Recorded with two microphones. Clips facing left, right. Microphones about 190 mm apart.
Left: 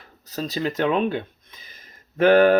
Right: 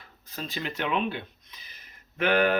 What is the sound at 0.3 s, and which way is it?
Speech, 40° left (ahead or behind).